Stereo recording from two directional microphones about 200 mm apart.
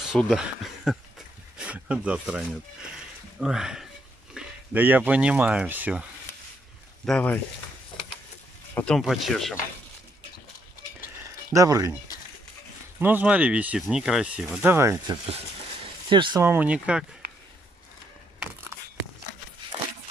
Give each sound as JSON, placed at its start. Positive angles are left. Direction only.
{"t": 0.0, "sound": "speech", "side_deg": 0}
{"t": 7.1, "sound": "speech", "side_deg": 5}
{"t": 8.7, "sound": "speech", "side_deg": 5}
{"t": 11.5, "sound": "speech", "side_deg": -15}
{"t": 13.0, "sound": "speech", "side_deg": -10}
{"t": 16.1, "sound": "speech", "side_deg": -25}
{"t": 16.4, "sound": "speech", "side_deg": -10}
{"t": 18.4, "sound": "a sound", "side_deg": -10}